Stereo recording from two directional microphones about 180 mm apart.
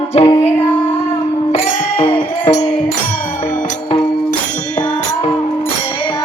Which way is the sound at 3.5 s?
40° left (ahead or behind).